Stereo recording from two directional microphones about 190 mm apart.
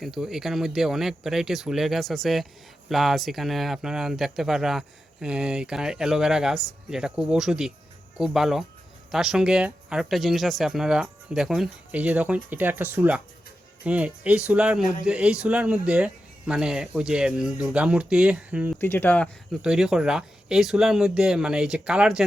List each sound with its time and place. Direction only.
0.0 s a man's voice: centre (ahead or behind)
18.8 s speech: 10° left (ahead or behind)
19.6 s a man's voice: 5° right (ahead or behind)